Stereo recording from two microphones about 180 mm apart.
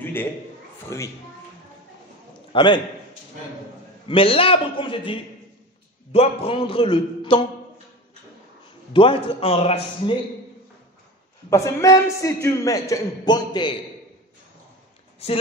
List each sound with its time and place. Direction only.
0.0 s a sound: 10° left (ahead or behind)
0.8 s a man's voice: 15° left (ahead or behind)
2.5 s a man's voice: 25° left (ahead or behind)
4.1 s a man's voice: 30° left (ahead or behind)
8.9 s a man's voice: 30° left (ahead or behind)
11.5 s a man's voice: 20° left (ahead or behind)
15.2 s speech: 35° left (ahead or behind)